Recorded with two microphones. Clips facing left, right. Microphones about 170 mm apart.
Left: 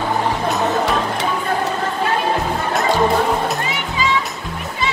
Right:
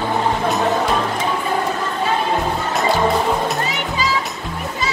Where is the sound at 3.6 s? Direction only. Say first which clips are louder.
Even; 40° right (ahead or behind).